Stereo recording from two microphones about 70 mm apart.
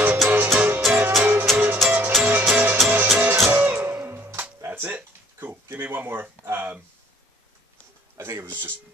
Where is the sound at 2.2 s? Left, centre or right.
Right.